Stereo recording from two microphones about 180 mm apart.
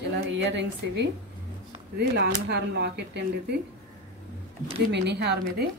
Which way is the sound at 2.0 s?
65° right (ahead or behind).